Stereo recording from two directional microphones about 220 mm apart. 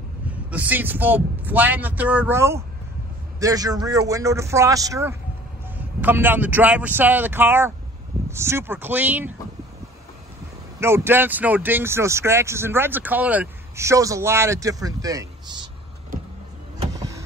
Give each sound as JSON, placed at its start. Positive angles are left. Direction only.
{"t": 0.5, "sound": "a man's voice", "side_deg": -5}
{"t": 10.8, "sound": "speech", "side_deg": -10}